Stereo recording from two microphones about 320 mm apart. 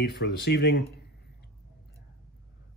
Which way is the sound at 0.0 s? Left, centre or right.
Left.